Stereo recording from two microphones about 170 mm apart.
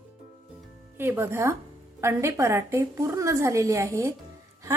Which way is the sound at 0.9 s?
10° right (ahead or behind).